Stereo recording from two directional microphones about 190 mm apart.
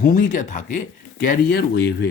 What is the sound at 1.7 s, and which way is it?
Speech, 65° left (ahead or behind).